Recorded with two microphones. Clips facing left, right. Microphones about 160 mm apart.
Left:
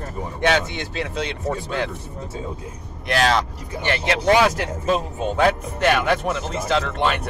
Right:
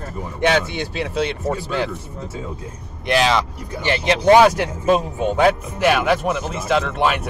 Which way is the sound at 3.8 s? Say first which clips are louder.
Right 4 dB; 15° right (ahead or behind).